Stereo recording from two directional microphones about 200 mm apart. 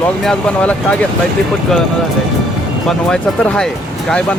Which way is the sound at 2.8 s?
5° left (ahead or behind).